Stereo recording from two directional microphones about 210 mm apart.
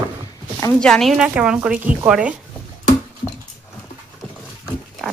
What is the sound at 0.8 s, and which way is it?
Speech, centre (ahead or behind).